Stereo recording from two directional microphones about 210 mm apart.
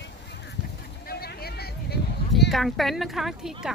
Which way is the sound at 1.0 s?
45° left (ahead or behind).